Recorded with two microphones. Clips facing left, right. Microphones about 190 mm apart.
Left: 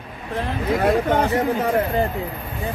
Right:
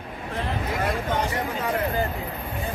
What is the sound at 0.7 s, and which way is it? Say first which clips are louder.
Speech: left 9 dB; 60° left (ahead or behind).